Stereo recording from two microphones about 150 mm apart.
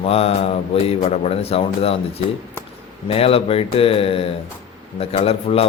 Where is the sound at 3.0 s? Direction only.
40° left (ahead or behind).